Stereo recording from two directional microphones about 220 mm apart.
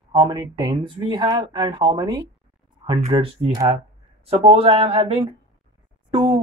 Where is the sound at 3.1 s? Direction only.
20° right (ahead or behind).